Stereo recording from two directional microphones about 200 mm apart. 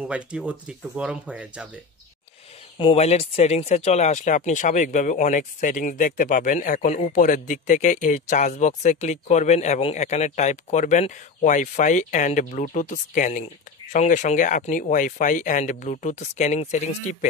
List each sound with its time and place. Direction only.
0.0 s speech: 5° right (ahead or behind)
2.8 s speech: 30° left (ahead or behind)